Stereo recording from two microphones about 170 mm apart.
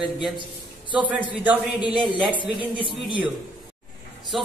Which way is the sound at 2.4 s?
30° right (ahead or behind).